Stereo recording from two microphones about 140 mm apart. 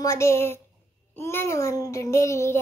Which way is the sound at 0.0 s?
20° left (ahead or behind).